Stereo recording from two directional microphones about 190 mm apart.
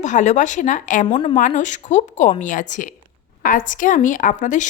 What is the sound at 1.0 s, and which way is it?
Speech, 25° left (ahead or behind).